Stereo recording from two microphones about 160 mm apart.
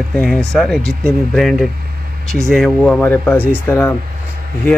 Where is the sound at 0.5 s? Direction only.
5° left (ahead or behind).